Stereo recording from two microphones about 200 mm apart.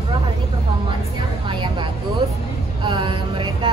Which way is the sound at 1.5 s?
25° right (ahead or behind).